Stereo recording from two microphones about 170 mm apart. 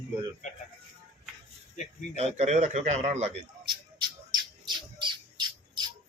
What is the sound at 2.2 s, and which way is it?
Speech, 40° right (ahead or behind).